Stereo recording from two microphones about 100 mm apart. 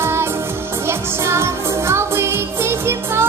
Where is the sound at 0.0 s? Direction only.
25° right (ahead or behind).